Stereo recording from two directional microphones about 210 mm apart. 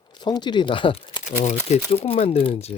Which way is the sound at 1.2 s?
35° left (ahead or behind).